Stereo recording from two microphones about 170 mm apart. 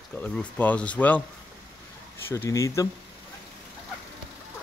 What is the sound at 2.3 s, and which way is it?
Speech, 15° left (ahead or behind).